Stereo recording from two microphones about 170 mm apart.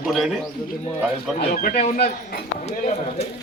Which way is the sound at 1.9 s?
65° left (ahead or behind).